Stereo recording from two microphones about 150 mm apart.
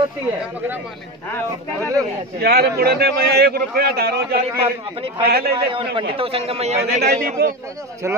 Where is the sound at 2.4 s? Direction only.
90° right.